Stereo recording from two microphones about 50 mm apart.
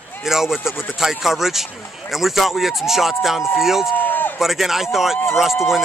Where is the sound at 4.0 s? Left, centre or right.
Left.